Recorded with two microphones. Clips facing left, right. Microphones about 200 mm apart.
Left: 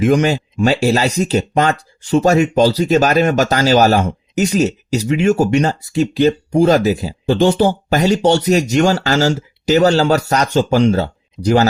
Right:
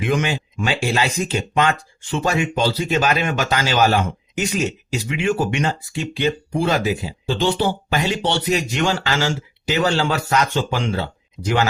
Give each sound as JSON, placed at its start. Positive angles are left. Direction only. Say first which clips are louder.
{"t": 0.0, "sound": "speech", "louder": "left 8 dB", "side_deg": 40}